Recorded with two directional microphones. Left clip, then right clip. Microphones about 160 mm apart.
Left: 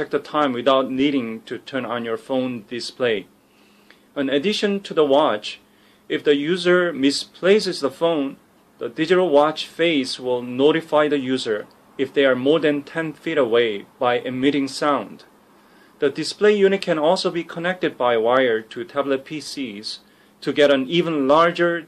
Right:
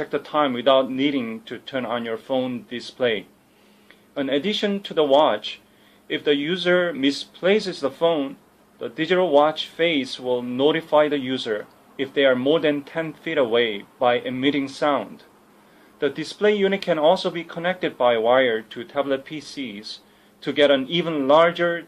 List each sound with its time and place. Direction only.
0.0 s speech: 25° left (ahead or behind)